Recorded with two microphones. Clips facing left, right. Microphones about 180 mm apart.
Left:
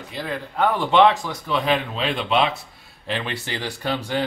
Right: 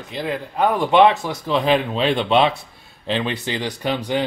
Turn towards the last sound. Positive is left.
turn(degrees=-20)  # may be behind; listen again after turning